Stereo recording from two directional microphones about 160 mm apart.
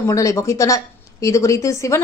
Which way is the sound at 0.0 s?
20° left (ahead or behind).